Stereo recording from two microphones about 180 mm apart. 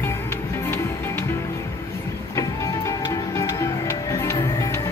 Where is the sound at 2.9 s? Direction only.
20° left (ahead or behind).